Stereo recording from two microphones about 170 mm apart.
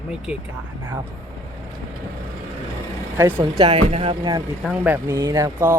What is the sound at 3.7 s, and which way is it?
Speech, 35° right (ahead or behind).